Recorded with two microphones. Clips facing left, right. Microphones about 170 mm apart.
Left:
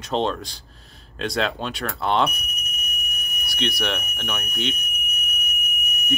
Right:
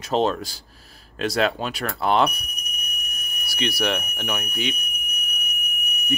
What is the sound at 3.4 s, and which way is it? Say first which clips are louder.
Speech: right 2 dB; 5° right (ahead or behind).